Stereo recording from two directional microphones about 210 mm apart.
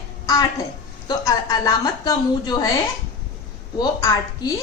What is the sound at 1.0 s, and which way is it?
A woman's voice, 20° left (ahead or behind).